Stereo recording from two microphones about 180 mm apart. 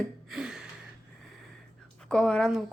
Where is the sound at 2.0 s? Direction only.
5° left (ahead or behind).